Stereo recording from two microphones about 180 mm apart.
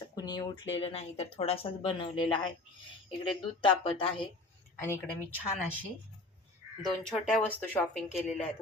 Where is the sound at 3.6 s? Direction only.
25° left (ahead or behind).